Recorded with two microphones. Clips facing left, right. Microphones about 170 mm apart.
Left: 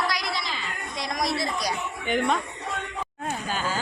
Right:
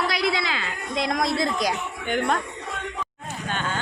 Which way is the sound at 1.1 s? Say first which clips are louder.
Right 2 dB; 55° right (ahead or behind).